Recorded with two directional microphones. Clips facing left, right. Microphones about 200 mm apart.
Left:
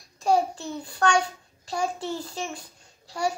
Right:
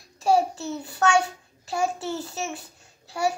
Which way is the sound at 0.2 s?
5° right (ahead or behind).